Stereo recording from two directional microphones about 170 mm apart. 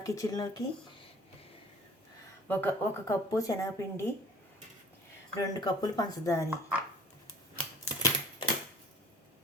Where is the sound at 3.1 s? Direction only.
20° left (ahead or behind).